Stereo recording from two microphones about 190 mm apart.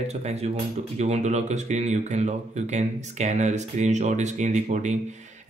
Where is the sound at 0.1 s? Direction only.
35° right (ahead or behind).